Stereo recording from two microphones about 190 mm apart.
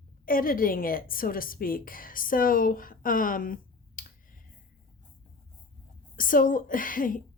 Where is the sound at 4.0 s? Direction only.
45° left (ahead or behind).